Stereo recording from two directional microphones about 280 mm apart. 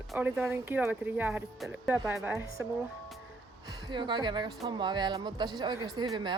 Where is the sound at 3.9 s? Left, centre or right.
Centre.